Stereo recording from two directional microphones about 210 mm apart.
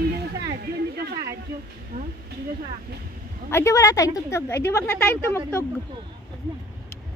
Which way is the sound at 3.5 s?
15° left (ahead or behind).